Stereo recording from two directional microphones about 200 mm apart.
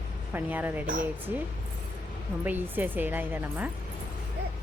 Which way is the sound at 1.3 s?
10° right (ahead or behind).